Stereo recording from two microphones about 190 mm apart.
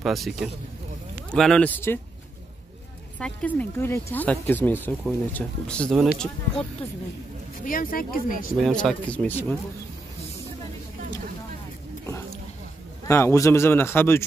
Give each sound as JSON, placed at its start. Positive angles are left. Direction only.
{"t": 0.0, "sound": "speech", "side_deg": 0}
{"t": 3.2, "sound": "speech", "side_deg": 5}
{"t": 7.6, "sound": "speech", "side_deg": 45}
{"t": 8.5, "sound": "speech", "side_deg": 0}
{"t": 13.0, "sound": "speech", "side_deg": 15}